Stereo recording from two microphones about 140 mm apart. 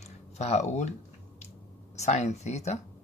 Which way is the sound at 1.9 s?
55° left (ahead or behind).